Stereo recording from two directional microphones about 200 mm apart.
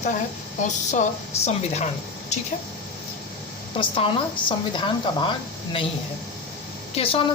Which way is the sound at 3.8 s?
25° left (ahead or behind).